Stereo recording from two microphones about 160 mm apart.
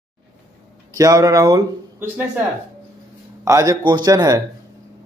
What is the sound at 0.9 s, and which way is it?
Speech, 20° right (ahead or behind).